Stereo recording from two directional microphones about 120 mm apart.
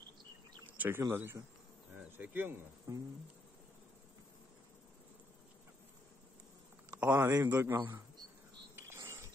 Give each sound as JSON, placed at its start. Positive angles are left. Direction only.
{"t": 0.7, "sound": "speech", "side_deg": -15}
{"t": 2.9, "sound": "speech", "side_deg": -30}
{"t": 6.9, "sound": "speech", "side_deg": -15}
{"t": 8.7, "sound": "a sound", "side_deg": -25}